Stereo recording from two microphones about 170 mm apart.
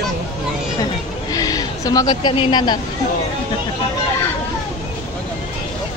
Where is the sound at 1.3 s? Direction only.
20° left (ahead or behind).